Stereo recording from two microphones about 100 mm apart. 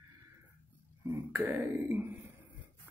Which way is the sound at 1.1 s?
25° right (ahead or behind).